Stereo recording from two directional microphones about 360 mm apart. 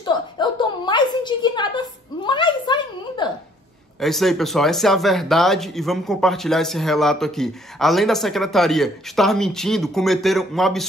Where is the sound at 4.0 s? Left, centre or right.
Centre.